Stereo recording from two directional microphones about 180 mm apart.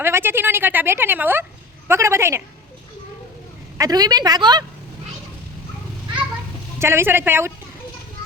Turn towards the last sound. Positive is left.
turn(degrees=-10)  # may be behind; listen again after turning